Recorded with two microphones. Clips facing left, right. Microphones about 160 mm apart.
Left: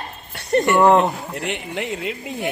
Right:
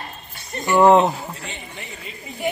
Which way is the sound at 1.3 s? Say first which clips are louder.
Left 9 dB; 70° left (ahead or behind).